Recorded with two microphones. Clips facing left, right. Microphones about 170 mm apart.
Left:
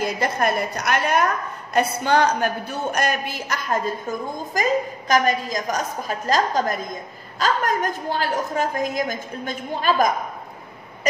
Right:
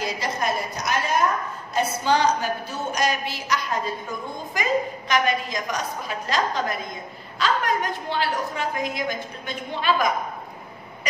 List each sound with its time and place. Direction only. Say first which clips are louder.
0.0 s a woman's voice: left 4 dB; 55° left (ahead or behind)